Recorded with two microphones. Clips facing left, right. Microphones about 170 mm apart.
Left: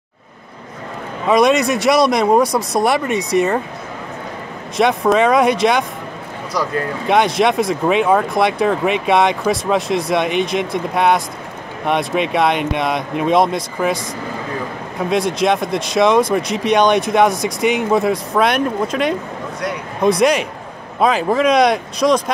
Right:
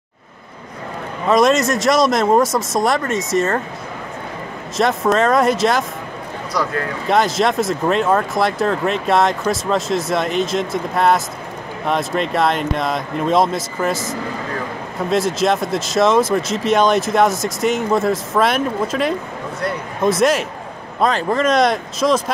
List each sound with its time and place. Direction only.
1.2 s speech: centre (ahead or behind)
3.3 s speech: 15° left (ahead or behind)
4.7 s speech: centre (ahead or behind)
7.1 s speech: centre (ahead or behind)
15.0 s speech: centre (ahead or behind)